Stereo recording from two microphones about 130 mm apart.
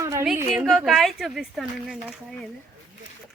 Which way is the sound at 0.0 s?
25° right (ahead or behind).